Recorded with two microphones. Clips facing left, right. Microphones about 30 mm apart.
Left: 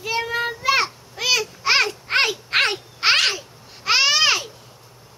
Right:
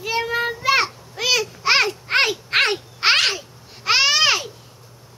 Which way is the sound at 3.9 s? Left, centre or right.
Centre.